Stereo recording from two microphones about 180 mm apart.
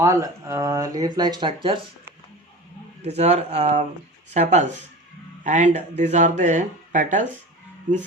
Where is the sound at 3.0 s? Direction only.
35° right (ahead or behind).